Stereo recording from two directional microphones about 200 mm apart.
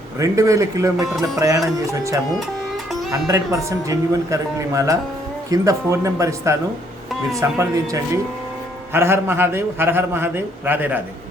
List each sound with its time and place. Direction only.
0.2 s a man's voice: 15° right (ahead or behind)